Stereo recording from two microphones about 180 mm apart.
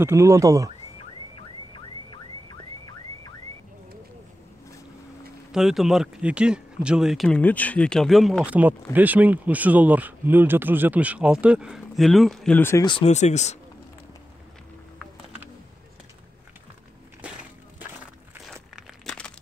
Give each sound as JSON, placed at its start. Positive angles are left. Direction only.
{"t": 0.0, "sound": "speech", "side_deg": -15}
{"t": 1.3, "sound": "car alarm", "side_deg": 25}
{"t": 5.5, "sound": "speech", "side_deg": 0}
{"t": 12.8, "sound": "speech", "side_deg": 25}
{"t": 13.1, "sound": "speech", "side_deg": 40}
{"t": 18.3, "sound": "crumpling", "side_deg": -5}